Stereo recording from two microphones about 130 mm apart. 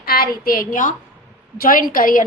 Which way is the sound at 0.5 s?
90° left.